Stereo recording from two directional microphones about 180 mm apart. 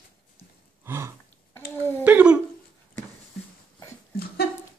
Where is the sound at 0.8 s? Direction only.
15° right (ahead or behind).